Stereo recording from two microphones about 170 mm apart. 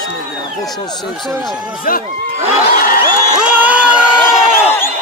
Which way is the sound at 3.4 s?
10° right (ahead or behind).